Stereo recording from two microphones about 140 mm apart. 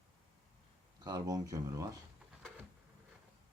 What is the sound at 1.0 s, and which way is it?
Speech, 25° right (ahead or behind).